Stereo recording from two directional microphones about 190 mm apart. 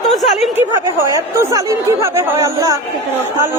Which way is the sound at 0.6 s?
15° right (ahead or behind).